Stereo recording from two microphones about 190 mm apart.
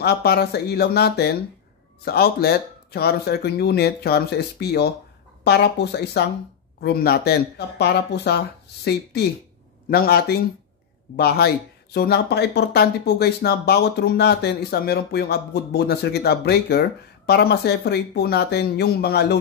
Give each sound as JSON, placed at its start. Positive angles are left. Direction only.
{"t": 0.0, "sound": "speech", "side_deg": 55}